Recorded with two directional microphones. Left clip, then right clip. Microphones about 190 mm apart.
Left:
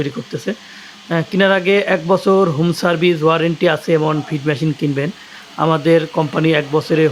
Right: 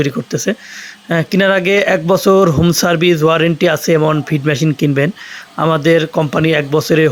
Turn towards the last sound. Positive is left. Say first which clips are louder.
# right 3 dB
turn(degrees=-20)  # may be behind; listen again after turning